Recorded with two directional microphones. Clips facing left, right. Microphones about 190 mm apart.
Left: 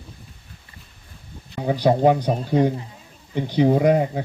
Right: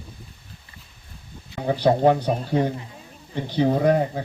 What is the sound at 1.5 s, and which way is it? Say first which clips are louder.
Speech: left 1 dB; 15° left (ahead or behind).